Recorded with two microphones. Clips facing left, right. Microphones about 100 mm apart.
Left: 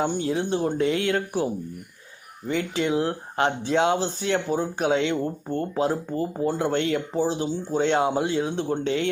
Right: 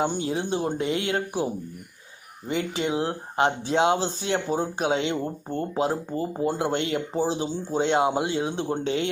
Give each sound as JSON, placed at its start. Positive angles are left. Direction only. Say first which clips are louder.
{"t": 0.0, "sound": "speech", "louder": "left 1 dB", "side_deg": -20}
{"t": 2.5, "sound": "speech", "louder": "left 2 dB", "side_deg": -20}